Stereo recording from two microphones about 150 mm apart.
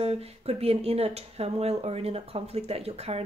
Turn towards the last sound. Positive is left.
turn(degrees=-45)  # may be behind; listen again after turning